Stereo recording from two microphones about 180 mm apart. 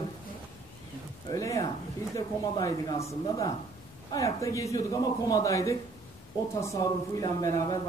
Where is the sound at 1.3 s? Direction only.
20° left (ahead or behind).